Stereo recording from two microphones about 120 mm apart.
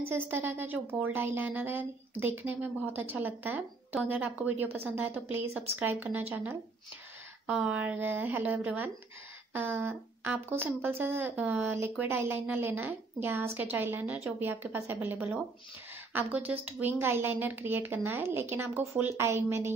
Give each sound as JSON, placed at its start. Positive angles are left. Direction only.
{"t": 0.1, "sound": "a woman's voice", "side_deg": -20}